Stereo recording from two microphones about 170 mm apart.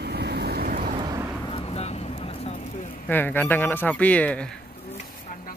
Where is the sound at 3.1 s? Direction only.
10° left (ahead or behind).